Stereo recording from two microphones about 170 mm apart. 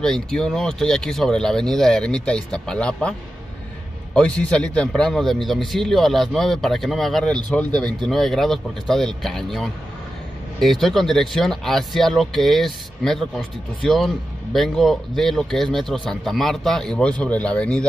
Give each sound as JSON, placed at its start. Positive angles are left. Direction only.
{"t": 0.0, "sound": "a man's voice", "side_deg": 5}